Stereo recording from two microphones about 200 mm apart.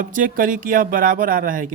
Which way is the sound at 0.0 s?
45° right (ahead or behind).